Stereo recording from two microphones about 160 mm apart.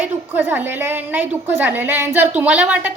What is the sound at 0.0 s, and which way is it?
A woman's voice, 10° right (ahead or behind).